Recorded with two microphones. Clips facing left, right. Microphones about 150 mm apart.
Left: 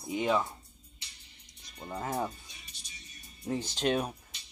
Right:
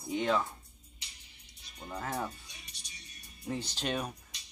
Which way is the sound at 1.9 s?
20° left (ahead or behind).